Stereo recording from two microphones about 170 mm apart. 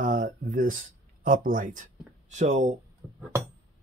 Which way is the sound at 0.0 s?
50° right (ahead or behind).